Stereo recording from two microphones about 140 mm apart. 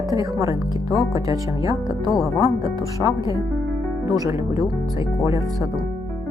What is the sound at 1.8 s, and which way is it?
Speech, 25° left (ahead or behind).